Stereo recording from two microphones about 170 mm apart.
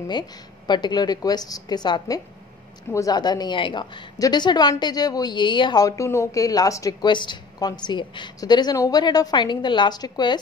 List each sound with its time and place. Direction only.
0.7 s a woman's voice: 25° left (ahead or behind)